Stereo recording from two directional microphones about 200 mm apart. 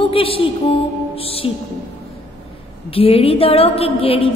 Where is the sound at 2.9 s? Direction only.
30° left (ahead or behind).